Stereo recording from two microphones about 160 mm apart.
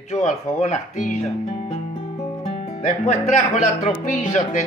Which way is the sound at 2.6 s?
40° left (ahead or behind).